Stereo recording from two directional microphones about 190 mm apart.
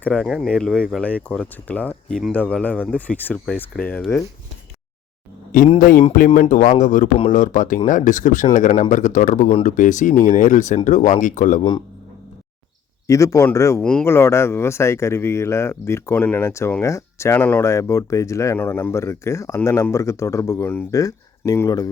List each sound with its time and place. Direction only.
0.0 s speech: 5° left (ahead or behind)
6.1 s speech: 45° left (ahead or behind)
13.1 s speech: 15° left (ahead or behind)